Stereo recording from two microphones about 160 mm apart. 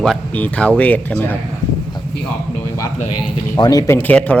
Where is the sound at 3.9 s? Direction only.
10° left (ahead or behind).